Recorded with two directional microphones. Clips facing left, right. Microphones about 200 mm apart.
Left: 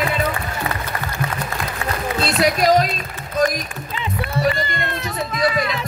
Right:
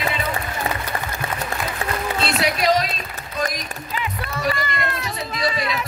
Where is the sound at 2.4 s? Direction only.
40° left (ahead or behind).